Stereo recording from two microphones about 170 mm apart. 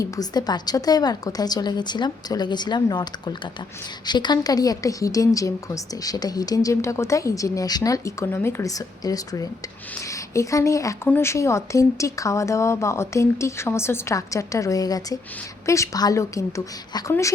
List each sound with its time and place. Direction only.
0.0 s a woman's voice: 25° left (ahead or behind)